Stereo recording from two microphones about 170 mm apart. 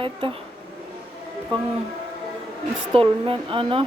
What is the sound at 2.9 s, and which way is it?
Speech, 30° right (ahead or behind).